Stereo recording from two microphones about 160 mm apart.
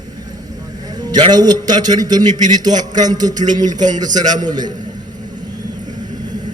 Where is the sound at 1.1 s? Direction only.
25° right (ahead or behind).